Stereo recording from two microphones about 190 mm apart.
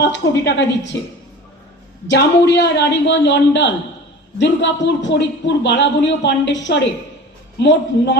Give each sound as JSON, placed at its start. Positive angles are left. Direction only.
{"t": 0.0, "sound": "a woman's voice", "side_deg": 65}
{"t": 2.0, "sound": "a man's voice", "side_deg": 65}